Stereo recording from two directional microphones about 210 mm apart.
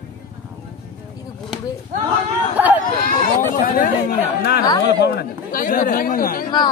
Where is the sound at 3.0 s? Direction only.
40° left (ahead or behind).